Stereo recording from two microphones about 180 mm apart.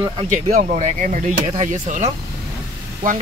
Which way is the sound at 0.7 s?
40° right (ahead or behind).